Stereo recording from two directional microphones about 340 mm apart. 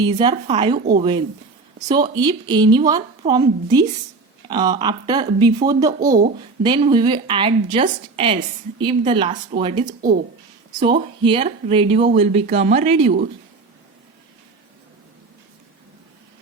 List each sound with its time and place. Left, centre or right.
0.0 s speech: centre